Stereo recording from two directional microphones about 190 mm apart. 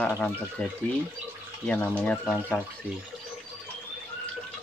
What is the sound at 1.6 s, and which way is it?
Speech, 10° left (ahead or behind).